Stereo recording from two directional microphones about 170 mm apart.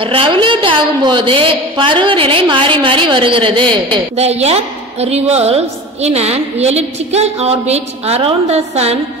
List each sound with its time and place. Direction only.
0.0 s a woman's voice: 30° right (ahead or behind)